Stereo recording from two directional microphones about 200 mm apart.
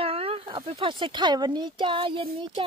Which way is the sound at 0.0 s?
30° right (ahead or behind).